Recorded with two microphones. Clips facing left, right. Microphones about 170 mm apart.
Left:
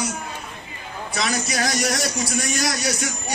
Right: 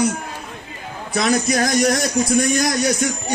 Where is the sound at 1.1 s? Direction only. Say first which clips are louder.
Right 7 dB; 50° right (ahead or behind).